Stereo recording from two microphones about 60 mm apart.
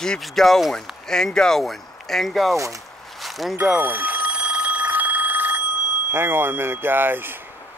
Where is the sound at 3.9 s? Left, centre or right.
Right.